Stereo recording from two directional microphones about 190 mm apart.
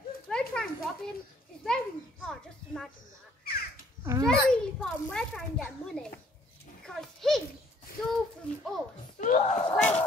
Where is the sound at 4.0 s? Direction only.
15° right (ahead or behind).